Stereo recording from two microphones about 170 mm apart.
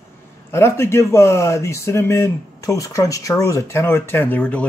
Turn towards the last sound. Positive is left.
turn(degrees=10)  # may be behind; listen again after turning